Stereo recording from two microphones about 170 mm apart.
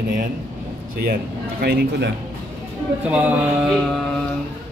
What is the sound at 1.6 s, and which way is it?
Speech, 75° right (ahead or behind).